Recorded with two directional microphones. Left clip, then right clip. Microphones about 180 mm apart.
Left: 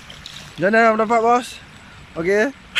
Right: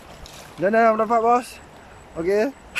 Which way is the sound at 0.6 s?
5° right (ahead or behind).